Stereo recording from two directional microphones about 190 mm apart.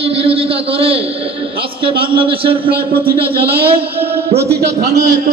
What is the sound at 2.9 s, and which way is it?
Speech, 55° right (ahead or behind).